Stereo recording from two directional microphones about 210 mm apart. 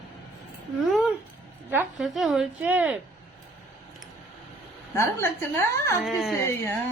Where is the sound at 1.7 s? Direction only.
Centre (ahead or behind).